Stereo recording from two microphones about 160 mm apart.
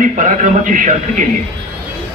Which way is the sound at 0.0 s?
55° right (ahead or behind).